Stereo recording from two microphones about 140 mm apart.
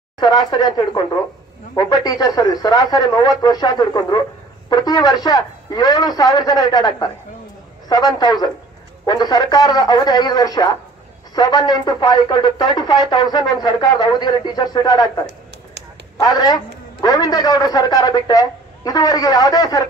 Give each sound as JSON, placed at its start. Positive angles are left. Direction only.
{"t": 0.2, "sound": "a man's voice", "side_deg": 30}
{"t": 16.2, "sound": "a man's voice", "side_deg": 30}